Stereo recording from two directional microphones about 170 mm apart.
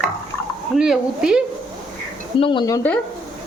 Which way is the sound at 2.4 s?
30° left (ahead or behind).